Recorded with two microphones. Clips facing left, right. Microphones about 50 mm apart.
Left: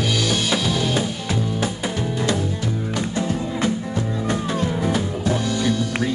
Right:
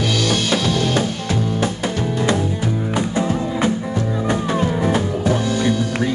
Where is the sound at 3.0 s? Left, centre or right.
Right.